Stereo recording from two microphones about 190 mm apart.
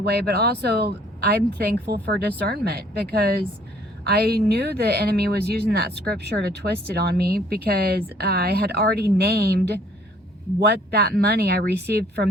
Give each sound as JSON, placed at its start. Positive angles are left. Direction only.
{"t": 0.0, "sound": "speech", "side_deg": -55}